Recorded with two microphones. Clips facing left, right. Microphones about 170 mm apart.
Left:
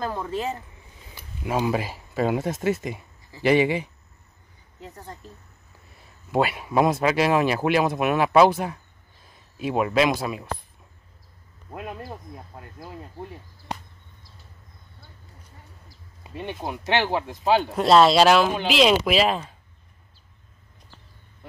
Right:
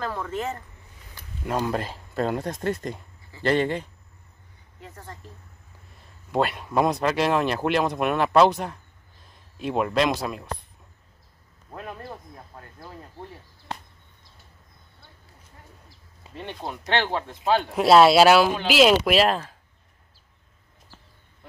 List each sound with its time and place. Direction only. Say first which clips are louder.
0.0 s speech: left 1 dB; 15° left (ahead or behind)
5.9 s speech: left 1 dB; 5° left (ahead or behind)
11.7 s speech: left 2 dB; 10° left (ahead or behind)
16.3 s speech: left 3 dB; 10° left (ahead or behind)
17.7 s speech: right 2 dB; 5° right (ahead or behind)